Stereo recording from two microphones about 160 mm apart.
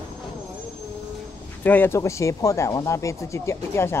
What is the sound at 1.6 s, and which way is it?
Speech, 10° left (ahead or behind).